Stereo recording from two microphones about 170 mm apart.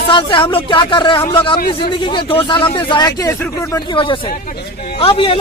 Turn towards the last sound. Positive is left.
turn(degrees=35)  # may be behind; listen again after turning